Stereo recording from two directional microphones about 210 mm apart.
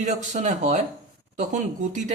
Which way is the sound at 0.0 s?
35° right (ahead or behind).